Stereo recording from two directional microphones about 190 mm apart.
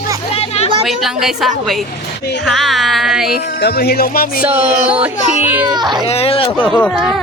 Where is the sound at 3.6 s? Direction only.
55° left (ahead or behind).